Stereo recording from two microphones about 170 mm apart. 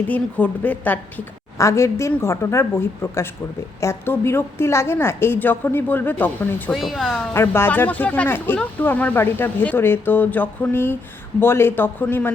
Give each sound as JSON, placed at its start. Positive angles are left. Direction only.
{"t": 0.1, "sound": "speech", "side_deg": 10}
{"t": 6.7, "sound": "a woman's voice", "side_deg": 0}
{"t": 7.2, "sound": "speech", "side_deg": 15}